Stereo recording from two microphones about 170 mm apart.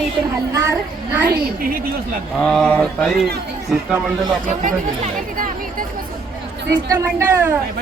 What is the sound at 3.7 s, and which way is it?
Speech, 10° right (ahead or behind).